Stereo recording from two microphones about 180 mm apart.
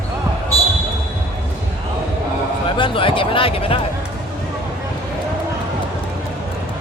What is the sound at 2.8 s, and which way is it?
Speech, 30° left (ahead or behind).